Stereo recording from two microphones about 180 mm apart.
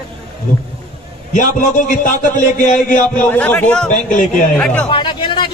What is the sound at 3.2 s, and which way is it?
Speech, 10° left (ahead or behind).